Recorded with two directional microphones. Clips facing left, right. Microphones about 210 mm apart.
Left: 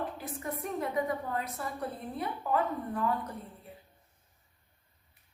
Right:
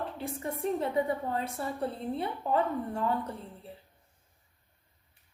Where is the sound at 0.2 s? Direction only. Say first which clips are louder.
Right 3 dB; 25° right (ahead or behind).